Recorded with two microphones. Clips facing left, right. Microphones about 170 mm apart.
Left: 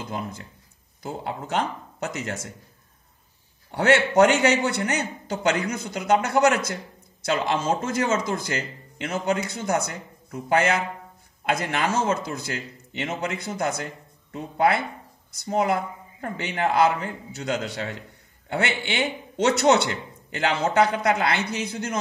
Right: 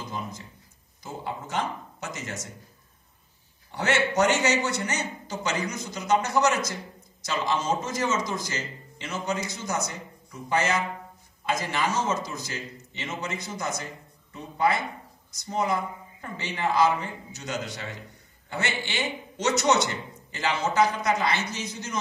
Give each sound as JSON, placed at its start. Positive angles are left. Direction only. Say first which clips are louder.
{"t": 0.1, "sound": "a man's voice", "louder": "left 3 dB", "side_deg": 60}
{"t": 3.7, "sound": "a man's voice", "louder": "left 6 dB", "side_deg": 60}